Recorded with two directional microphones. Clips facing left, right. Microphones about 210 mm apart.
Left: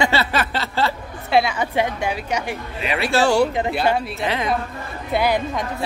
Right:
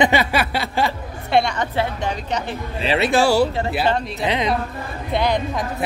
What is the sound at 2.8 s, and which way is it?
Speech, 30° right (ahead or behind).